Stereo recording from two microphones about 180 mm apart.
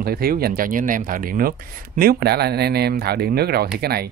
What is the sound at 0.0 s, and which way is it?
Speech, 55° right (ahead or behind).